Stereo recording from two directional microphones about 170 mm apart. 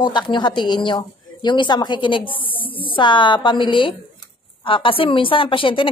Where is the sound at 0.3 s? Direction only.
25° left (ahead or behind).